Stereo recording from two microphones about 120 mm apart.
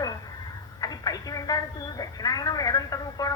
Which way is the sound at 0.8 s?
30° left (ahead or behind).